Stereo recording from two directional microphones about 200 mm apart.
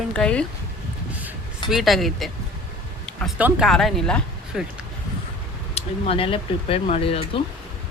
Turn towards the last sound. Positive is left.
turn(degrees=30)  # may be behind; listen again after turning